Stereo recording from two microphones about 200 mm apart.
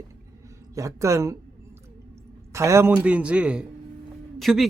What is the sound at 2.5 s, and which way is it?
A man's voice, 15° right (ahead or behind).